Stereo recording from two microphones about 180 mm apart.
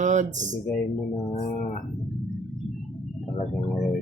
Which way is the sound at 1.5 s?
45° left (ahead or behind).